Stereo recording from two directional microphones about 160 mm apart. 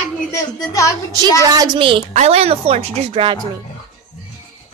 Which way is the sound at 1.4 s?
30° right (ahead or behind).